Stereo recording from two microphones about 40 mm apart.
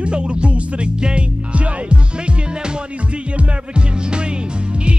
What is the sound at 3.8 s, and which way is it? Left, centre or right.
Music, right.